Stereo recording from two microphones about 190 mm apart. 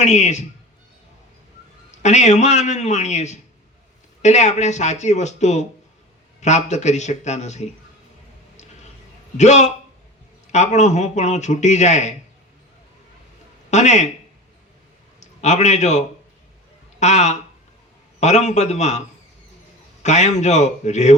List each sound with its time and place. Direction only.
0.0 s a man's voice: 40° left (ahead or behind)
1.9 s a man's voice: 40° left (ahead or behind)
9.4 s a man's voice: 35° left (ahead or behind)
13.7 s speech: 40° left (ahead or behind)
15.4 s a man's voice: 40° left (ahead or behind)